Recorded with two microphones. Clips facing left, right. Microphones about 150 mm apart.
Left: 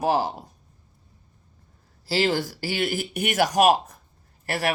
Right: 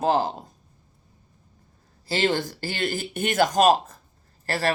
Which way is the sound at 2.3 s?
20° right (ahead or behind).